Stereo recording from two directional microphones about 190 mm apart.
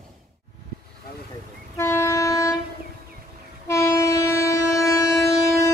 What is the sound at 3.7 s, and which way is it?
Train, 15° left (ahead or behind).